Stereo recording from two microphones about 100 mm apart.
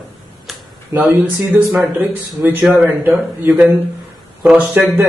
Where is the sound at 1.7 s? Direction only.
5° right (ahead or behind).